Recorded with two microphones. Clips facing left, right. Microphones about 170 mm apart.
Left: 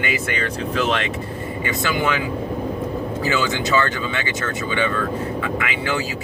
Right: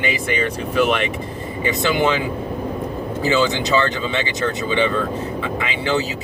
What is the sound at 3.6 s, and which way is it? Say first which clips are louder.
Speech: right 1 dB; 25° right (ahead or behind).